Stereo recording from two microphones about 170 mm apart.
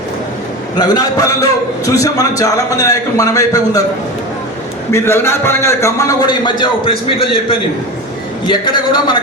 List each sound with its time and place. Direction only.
0.8 s a man's voice: 20° left (ahead or behind)
4.9 s a man's voice: 15° left (ahead or behind)